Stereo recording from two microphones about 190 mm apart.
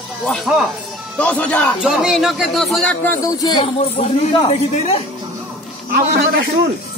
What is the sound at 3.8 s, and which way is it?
Speech, 30° left (ahead or behind).